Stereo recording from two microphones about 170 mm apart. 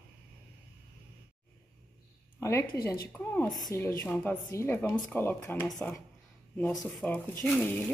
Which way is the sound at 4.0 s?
10° left (ahead or behind).